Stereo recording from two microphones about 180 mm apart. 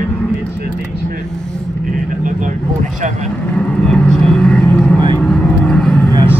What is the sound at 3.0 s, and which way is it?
Speech, 40° right (ahead or behind).